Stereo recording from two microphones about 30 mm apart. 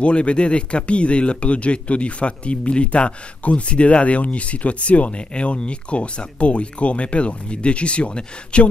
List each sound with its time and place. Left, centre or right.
0.0 s speech: left